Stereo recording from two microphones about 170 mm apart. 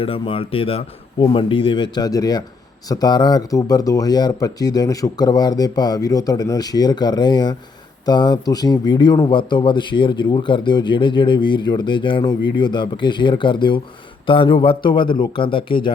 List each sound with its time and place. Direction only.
0.0 s a man's voice: 30° left (ahead or behind)